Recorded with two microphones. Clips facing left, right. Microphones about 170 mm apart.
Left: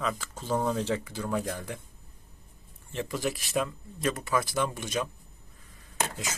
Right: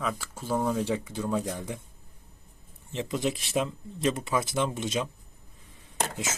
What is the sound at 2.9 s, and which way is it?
Speech, 20° right (ahead or behind).